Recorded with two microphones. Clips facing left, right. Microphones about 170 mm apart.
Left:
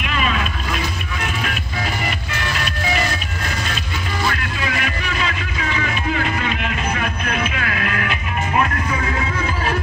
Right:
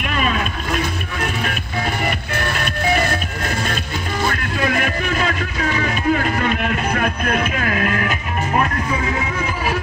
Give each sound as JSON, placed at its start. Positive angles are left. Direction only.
{"t": 0.0, "sound": "vehicle", "side_deg": -45}
{"t": 2.0, "sound": "music", "side_deg": -50}